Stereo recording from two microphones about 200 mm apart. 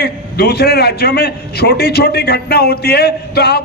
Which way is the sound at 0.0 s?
55° left (ahead or behind).